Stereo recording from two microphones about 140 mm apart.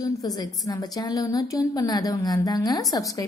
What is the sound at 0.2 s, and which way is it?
A woman's voice, 25° left (ahead or behind).